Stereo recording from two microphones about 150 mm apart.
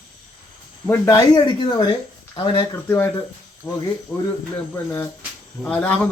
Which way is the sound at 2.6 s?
15° left (ahead or behind).